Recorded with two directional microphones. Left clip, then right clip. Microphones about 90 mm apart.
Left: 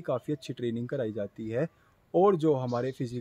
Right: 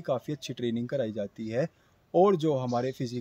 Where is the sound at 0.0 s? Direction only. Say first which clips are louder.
Even; 40° left (ahead or behind).